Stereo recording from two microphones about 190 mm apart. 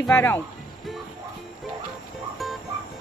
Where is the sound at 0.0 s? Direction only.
10° left (ahead or behind).